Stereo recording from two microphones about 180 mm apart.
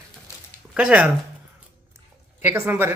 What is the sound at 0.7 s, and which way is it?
Speech, 5° right (ahead or behind).